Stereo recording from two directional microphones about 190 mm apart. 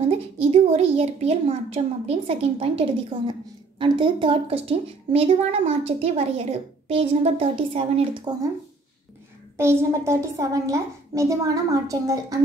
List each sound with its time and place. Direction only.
0.0 s a child's voice: 35° right (ahead or behind)
9.6 s a woman's voice: 15° right (ahead or behind)